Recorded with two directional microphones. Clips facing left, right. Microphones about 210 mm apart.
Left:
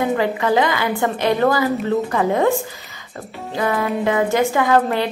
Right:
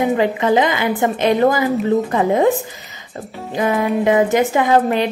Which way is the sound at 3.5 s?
20° right (ahead or behind).